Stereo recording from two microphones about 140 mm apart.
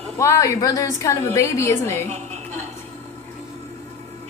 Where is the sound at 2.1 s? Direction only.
50° right (ahead or behind).